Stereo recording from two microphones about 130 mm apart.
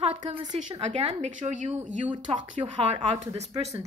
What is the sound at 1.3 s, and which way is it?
Speech, 70° right (ahead or behind).